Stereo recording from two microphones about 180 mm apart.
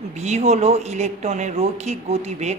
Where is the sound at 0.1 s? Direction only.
40° right (ahead or behind).